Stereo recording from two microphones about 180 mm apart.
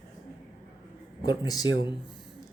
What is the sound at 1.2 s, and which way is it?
Speech, 20° left (ahead or behind).